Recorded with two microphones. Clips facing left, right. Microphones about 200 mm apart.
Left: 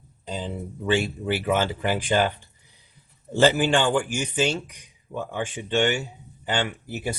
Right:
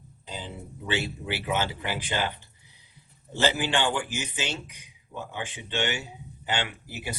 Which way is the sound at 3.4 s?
45° left (ahead or behind).